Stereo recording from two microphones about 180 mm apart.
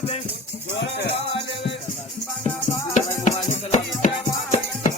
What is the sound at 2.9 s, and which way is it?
Music, 40° left (ahead or behind).